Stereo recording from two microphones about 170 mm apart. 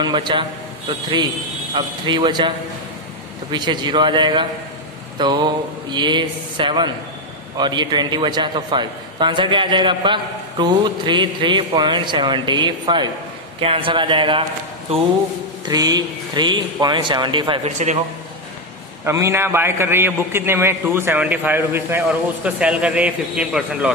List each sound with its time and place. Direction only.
0.0 s a man's voice: 25° right (ahead or behind)
1.8 s a man's voice: 25° right (ahead or behind)
3.5 s a man's voice: 25° right (ahead or behind)
15.7 s a man's voice: 20° right (ahead or behind)
17.6 s a man's voice: 40° right (ahead or behind)
19.0 s a man's voice: 15° right (ahead or behind)